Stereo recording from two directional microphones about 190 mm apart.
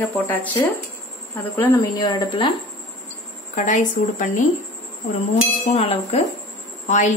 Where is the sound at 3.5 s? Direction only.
40° left (ahead or behind).